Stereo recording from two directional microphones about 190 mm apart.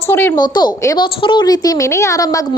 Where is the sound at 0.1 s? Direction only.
10° left (ahead or behind).